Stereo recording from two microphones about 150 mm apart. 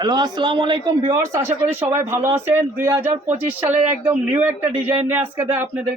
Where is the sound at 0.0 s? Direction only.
30° right (ahead or behind).